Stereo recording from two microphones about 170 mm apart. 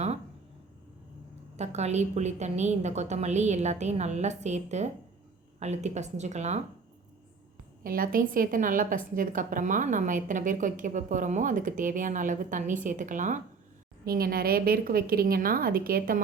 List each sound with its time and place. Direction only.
1.5 s a woman's voice: 40° right (ahead or behind)
7.9 s a woman's voice: 55° right (ahead or behind)
14.0 s a woman's voice: 60° right (ahead or behind)